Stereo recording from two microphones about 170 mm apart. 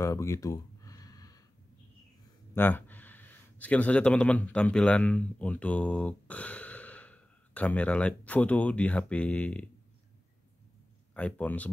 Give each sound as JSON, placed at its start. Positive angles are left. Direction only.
{"t": 0.0, "sound": "a sound", "side_deg": 20}
{"t": 2.5, "sound": "speech", "side_deg": 10}
{"t": 11.1, "sound": "speech", "side_deg": 10}